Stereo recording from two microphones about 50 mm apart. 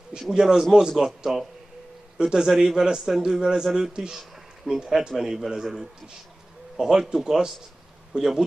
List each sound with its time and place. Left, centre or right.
0.3 s a man's voice: centre
8.1 s a man's voice: centre